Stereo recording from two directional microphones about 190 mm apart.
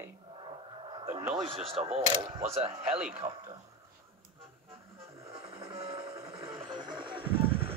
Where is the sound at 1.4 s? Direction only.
30° right (ahead or behind).